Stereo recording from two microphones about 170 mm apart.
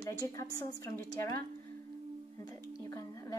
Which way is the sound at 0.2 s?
20° left (ahead or behind).